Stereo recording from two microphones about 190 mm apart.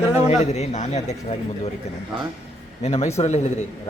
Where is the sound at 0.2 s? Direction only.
35° left (ahead or behind).